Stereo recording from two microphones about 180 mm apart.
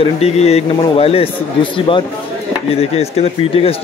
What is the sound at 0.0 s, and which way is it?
A man's voice, 35° left (ahead or behind).